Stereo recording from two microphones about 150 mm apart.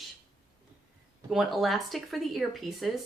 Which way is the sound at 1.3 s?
Centre (ahead or behind).